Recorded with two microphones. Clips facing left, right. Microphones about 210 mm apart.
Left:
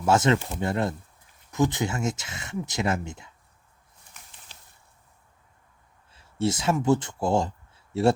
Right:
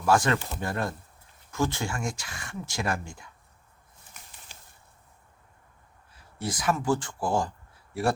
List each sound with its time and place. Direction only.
0.0 s speech: 25° left (ahead or behind)
4.5 s a sound: 10° right (ahead or behind)
6.1 s speech: 25° left (ahead or behind)